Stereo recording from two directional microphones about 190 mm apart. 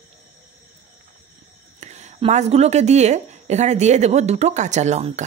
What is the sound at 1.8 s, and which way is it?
A woman's voice, 35° right (ahead or behind).